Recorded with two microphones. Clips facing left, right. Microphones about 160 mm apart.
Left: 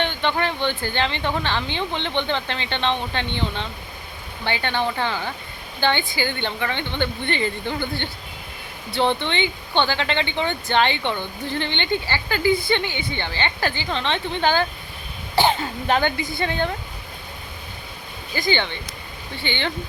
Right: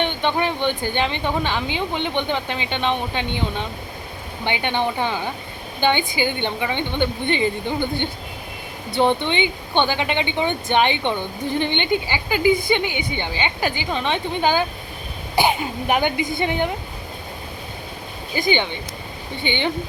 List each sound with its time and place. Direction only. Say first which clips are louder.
0.0 s speech: right 2 dB; 15° right (ahead or behind)
18.3 s speech: right 2 dB; 15° right (ahead or behind)